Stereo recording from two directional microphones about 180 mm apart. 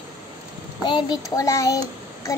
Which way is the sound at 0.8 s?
25° left (ahead or behind).